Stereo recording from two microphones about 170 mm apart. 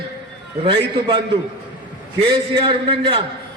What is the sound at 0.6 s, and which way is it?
A man's voice, 30° right (ahead or behind).